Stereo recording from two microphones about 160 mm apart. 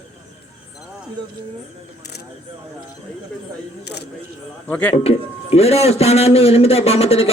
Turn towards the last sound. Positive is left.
turn(degrees=40)  # may be behind; listen again after turning